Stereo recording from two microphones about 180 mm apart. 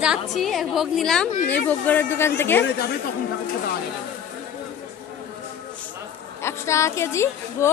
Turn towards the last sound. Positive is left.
turn(degrees=15)  # may be behind; listen again after turning